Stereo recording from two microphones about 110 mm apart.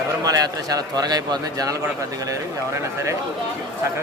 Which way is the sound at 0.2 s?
35° right (ahead or behind).